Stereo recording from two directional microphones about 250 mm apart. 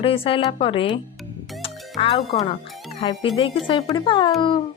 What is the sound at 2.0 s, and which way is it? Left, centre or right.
A woman's voice, left.